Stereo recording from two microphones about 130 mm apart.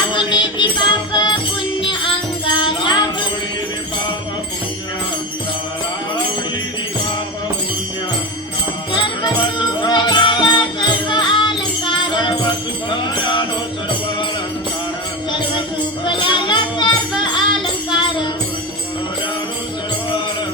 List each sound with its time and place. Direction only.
0.1 s music: 35° left (ahead or behind)
2.6 s music: 35° left (ahead or behind)
8.9 s music: 35° left (ahead or behind)
16.0 s music: 40° left (ahead or behind)